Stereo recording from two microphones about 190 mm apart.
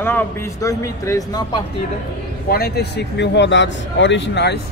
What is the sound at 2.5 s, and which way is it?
Speech, 55° left (ahead or behind).